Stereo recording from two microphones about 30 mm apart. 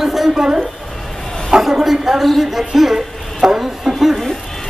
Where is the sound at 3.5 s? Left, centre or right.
Centre.